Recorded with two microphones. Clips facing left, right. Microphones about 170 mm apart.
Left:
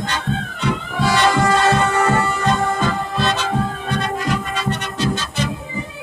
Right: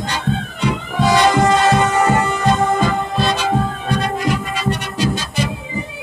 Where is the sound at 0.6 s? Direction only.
15° right (ahead or behind).